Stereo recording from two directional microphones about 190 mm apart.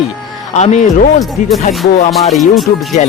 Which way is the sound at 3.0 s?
40° left (ahead or behind).